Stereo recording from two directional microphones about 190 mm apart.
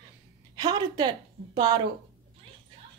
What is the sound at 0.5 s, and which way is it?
A woman's voice, 20° right (ahead or behind).